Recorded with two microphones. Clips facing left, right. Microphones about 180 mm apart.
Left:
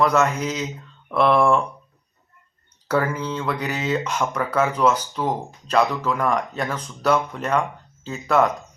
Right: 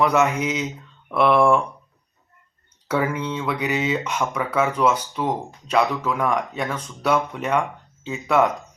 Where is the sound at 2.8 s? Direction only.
5° right (ahead or behind).